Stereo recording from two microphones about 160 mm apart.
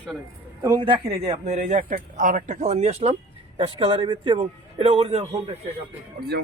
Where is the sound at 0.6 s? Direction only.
25° right (ahead or behind).